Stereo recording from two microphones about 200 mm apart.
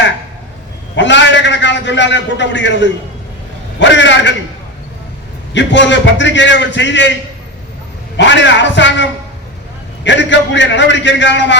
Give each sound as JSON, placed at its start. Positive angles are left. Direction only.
{"t": 0.9, "sound": "a sound", "side_deg": 60}
{"t": 3.8, "sound": "a man's voice", "side_deg": 65}
{"t": 5.5, "sound": "a man's voice", "side_deg": 65}
{"t": 8.1, "sound": "a man's voice", "side_deg": 60}